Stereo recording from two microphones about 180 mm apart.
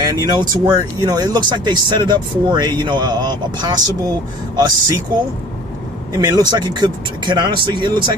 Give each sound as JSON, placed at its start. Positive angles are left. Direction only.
{"t": 0.0, "sound": "speech", "side_deg": -20}
{"t": 6.1, "sound": "speech", "side_deg": -20}